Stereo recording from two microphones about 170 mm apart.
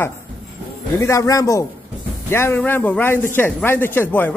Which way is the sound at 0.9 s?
20° left (ahead or behind).